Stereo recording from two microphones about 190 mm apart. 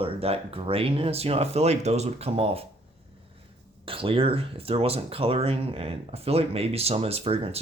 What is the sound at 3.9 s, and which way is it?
Speech, 30° right (ahead or behind).